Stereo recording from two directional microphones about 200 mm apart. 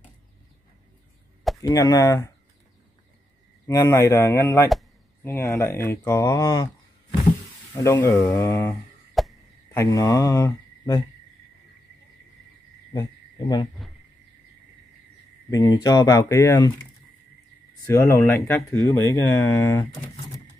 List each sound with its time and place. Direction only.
1.6 s speech: 20° left (ahead or behind)
3.6 s speech: 15° left (ahead or behind)
7.7 s speech: 15° left (ahead or behind)
9.2 s frog: centre (ahead or behind)
9.8 s speech: 15° left (ahead or behind)
12.9 s frog: 20° left (ahead or behind)
15.5 s speech: 20° left (ahead or behind)
17.8 s speech: 15° left (ahead or behind)